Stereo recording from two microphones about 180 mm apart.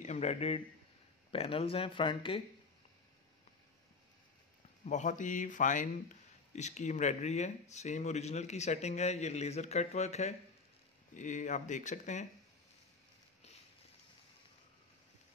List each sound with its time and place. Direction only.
0.0 s a man's voice: 40° left (ahead or behind)
4.8 s speech: 45° left (ahead or behind)